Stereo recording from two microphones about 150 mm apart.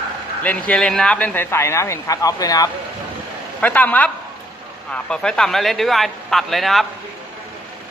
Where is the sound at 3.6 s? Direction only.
10° left (ahead or behind).